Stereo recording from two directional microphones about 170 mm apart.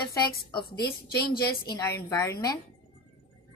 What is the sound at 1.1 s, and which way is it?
Speech, 65° left (ahead or behind).